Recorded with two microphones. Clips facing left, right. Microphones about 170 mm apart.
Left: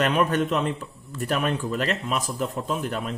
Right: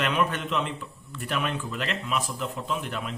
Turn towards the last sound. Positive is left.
turn(degrees=40)  # may be behind; listen again after turning